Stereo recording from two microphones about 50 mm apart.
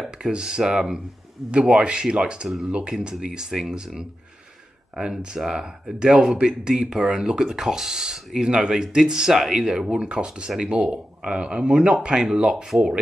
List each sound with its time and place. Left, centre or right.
0.0 s speech: centre